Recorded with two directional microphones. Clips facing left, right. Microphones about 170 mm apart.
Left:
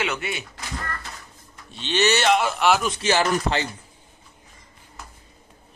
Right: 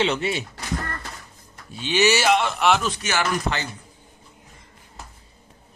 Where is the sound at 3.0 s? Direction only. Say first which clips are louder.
Left 4 dB; 30° left (ahead or behind).